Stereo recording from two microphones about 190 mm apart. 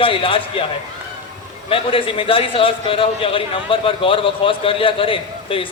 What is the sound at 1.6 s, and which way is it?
A man's voice, 30° left (ahead or behind).